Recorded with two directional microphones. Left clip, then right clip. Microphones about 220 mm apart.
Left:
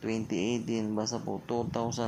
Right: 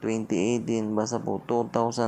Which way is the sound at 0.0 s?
15° right (ahead or behind).